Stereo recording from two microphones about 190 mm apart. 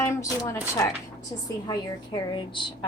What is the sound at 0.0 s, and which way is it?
Speech, 15° left (ahead or behind).